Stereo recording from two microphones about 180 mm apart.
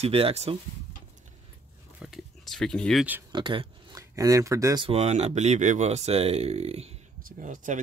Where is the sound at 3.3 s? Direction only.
30° right (ahead or behind).